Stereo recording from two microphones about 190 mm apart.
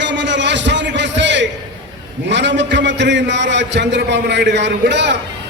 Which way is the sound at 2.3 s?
70° right (ahead or behind).